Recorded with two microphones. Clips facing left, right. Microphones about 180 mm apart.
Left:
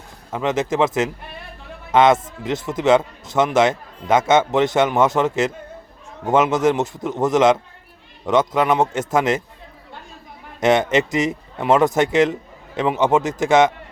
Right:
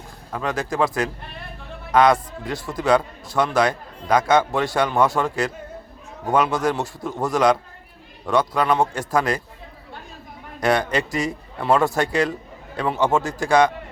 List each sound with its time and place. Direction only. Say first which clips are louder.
0.3 s speech: left 4 dB; 20° left (ahead or behind)
10.6 s speech: left 4 dB; 20° left (ahead or behind)